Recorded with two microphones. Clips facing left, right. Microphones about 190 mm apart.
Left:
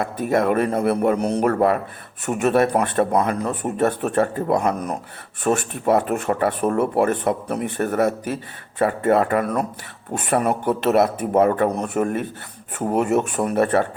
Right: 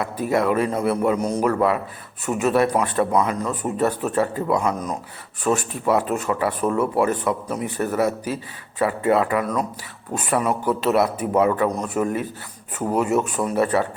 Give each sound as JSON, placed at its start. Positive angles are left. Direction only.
{"t": 0.0, "sound": "speech", "side_deg": 50}
{"t": 13.2, "sound": "speech", "side_deg": 60}